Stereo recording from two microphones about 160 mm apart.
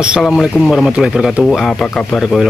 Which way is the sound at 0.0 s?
5° right (ahead or behind).